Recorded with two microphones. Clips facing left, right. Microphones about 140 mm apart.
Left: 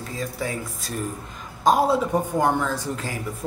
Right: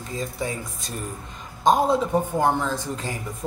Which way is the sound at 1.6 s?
5° left (ahead or behind).